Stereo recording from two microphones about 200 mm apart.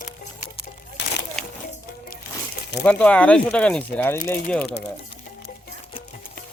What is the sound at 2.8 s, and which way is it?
Speech, 5° left (ahead or behind).